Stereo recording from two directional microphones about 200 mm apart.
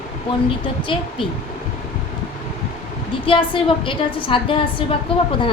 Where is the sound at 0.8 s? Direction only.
25° left (ahead or behind).